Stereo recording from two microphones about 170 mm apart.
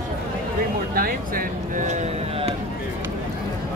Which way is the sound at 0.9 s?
55° right (ahead or behind).